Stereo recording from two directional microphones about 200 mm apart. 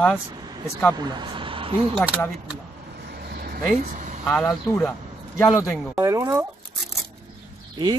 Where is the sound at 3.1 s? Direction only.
50° right (ahead or behind).